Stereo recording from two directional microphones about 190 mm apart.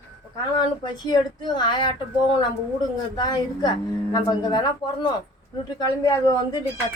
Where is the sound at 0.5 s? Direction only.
20° left (ahead or behind).